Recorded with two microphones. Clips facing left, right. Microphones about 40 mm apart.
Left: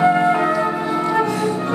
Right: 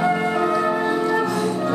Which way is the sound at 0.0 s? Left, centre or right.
Left.